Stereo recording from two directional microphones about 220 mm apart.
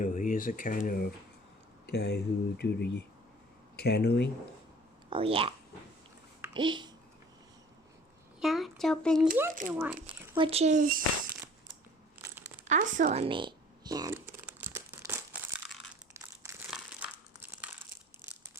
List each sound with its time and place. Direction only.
0.0 s speech: 35° left (ahead or behind)
5.0 s a child's voice: 25° right (ahead or behind)
8.4 s speech: centre (ahead or behind)
9.5 s speech: 35° right (ahead or behind)
10.3 s speech: 25° right (ahead or behind)
12.6 s computer keyboard: 35° right (ahead or behind); by 15.4 s 10° right (ahead or behind)
16.4 s crumpling: 10° right (ahead or behind)